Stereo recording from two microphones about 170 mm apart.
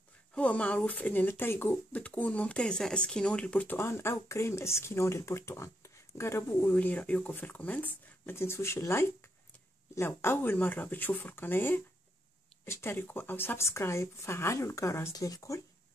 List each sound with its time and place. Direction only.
0.3 s speech: 5° left (ahead or behind)